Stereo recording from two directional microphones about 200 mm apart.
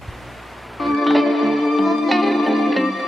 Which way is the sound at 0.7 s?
Centre (ahead or behind).